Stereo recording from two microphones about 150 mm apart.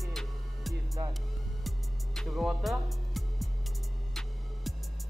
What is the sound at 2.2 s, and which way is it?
Music, centre (ahead or behind).